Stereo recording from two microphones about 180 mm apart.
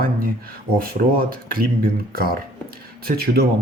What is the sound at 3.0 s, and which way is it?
Speech, 60° right (ahead or behind).